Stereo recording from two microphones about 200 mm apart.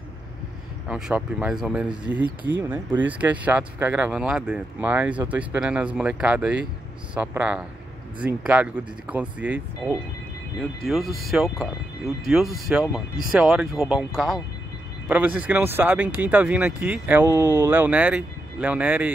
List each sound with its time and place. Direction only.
0.8 s speech: 5° right (ahead or behind)